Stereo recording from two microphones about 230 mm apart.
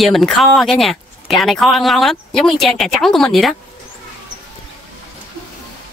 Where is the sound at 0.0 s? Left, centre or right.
Centre.